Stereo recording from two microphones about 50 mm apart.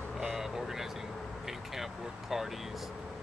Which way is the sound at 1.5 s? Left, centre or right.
Centre.